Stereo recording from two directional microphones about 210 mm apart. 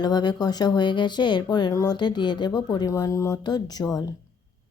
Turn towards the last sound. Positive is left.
turn(degrees=20)  # may be behind; listen again after turning